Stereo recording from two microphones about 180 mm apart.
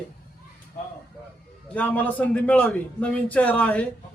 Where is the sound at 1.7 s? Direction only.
10° left (ahead or behind).